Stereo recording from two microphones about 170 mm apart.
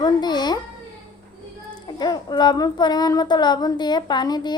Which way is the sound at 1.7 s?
25° left (ahead or behind).